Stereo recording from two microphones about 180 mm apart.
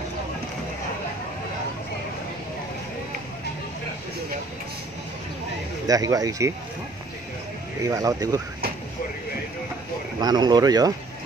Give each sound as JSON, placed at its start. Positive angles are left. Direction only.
{"t": 5.9, "sound": "speech", "side_deg": -20}
{"t": 7.8, "sound": "speech", "side_deg": -20}
{"t": 10.2, "sound": "speech", "side_deg": -20}